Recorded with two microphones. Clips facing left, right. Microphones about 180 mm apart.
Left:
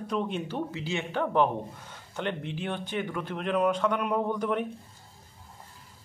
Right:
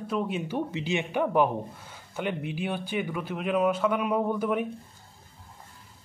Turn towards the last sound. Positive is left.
turn(degrees=-5)  # may be behind; listen again after turning